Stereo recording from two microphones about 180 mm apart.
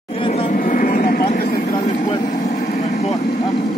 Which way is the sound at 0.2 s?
30° left (ahead or behind).